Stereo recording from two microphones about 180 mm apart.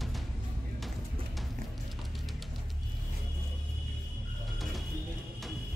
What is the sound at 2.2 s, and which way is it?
Music, centre (ahead or behind).